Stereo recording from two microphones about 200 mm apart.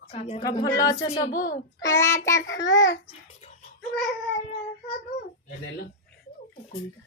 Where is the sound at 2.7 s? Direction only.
65° left (ahead or behind).